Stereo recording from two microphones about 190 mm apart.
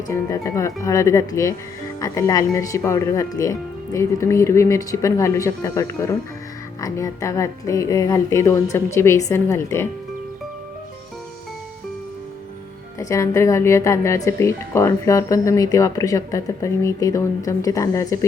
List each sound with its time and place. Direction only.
0.1 s speech: 15° left (ahead or behind)
13.0 s speech: 15° left (ahead or behind)